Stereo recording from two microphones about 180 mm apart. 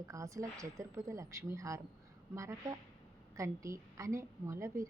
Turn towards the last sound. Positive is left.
turn(degrees=-15)  # may be behind; listen again after turning